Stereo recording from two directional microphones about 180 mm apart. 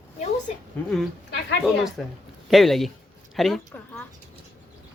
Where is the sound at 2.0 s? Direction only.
5° left (ahead or behind).